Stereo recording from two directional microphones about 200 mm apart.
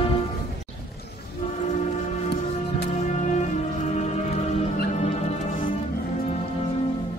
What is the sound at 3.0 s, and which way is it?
Music, 35° left (ahead or behind).